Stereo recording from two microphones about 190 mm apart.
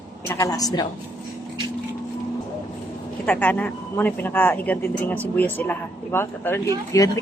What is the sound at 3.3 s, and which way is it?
A woman's voice, 10° left (ahead or behind).